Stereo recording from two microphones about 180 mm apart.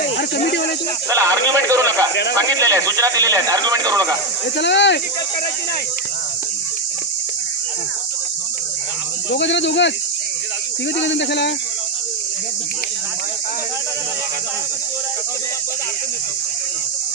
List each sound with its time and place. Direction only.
0.0 s snake: 60° left (ahead or behind)
1.1 s a man's voice: 15° right (ahead or behind)
4.5 s speech: 75° left (ahead or behind)
9.3 s speech: 75° left (ahead or behind)
11.0 s speech: 75° left (ahead or behind)